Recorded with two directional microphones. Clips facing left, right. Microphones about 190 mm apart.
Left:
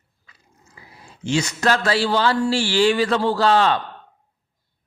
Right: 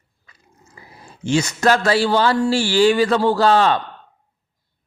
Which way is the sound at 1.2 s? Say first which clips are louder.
Right 3 dB; 45° right (ahead or behind).